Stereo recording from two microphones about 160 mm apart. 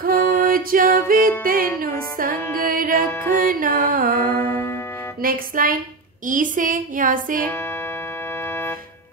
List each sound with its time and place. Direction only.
0.0 s music: 65° right (ahead or behind)
4.2 s music: 10° left (ahead or behind)
5.2 s a woman's voice: 65° right (ahead or behind)